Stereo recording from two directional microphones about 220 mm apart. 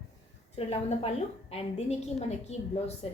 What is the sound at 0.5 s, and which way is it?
A woman's voice, 25° left (ahead or behind).